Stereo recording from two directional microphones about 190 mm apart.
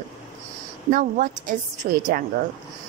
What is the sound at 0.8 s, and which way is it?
A woman's voice, 45° right (ahead or behind).